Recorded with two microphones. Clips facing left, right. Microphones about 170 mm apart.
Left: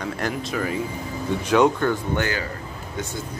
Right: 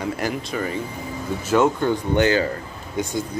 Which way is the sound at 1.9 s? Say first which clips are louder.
Right 6 dB; 20° right (ahead or behind).